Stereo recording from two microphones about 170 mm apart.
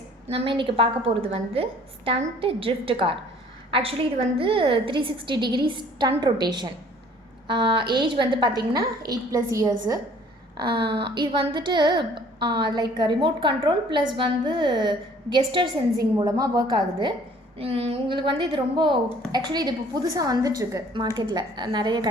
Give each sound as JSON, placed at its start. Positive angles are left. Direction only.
{"t": 0.3, "sound": "a woman's voice", "side_deg": -30}